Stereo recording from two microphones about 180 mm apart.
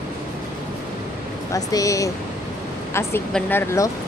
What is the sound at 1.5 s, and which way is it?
Speech, 20° left (ahead or behind).